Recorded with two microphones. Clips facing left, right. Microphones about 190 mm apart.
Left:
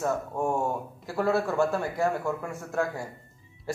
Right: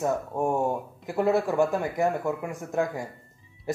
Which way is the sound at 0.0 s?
15° right (ahead or behind).